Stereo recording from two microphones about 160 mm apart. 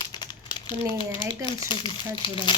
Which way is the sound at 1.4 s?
30° left (ahead or behind).